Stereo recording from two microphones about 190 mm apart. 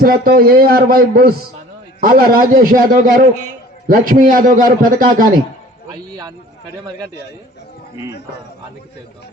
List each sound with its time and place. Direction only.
0.0 s a man's voice: 50° right (ahead or behind)